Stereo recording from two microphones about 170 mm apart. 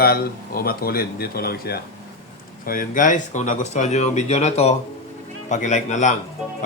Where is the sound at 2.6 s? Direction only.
50° left (ahead or behind).